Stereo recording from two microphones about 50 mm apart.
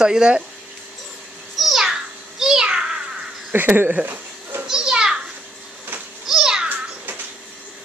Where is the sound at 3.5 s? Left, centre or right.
Right.